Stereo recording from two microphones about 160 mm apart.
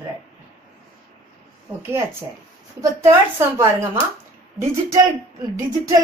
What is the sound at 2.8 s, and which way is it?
A woman's voice, 20° right (ahead or behind).